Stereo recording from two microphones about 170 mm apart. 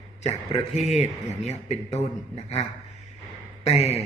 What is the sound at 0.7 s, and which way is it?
A man's voice, 40° left (ahead or behind).